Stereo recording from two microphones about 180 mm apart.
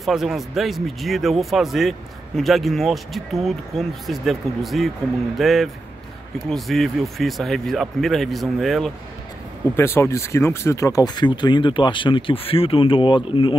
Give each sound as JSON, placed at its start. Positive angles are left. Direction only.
{"t": 0.0, "sound": "speech", "side_deg": 0}
{"t": 9.8, "sound": "speech", "side_deg": 15}